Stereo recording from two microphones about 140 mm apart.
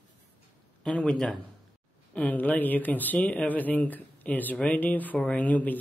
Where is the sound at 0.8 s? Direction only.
5° left (ahead or behind).